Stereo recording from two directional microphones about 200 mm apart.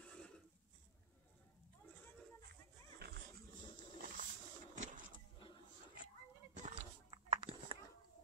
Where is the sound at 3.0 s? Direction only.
55° right (ahead or behind).